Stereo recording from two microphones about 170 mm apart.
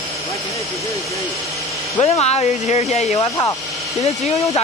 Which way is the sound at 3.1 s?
20° left (ahead or behind).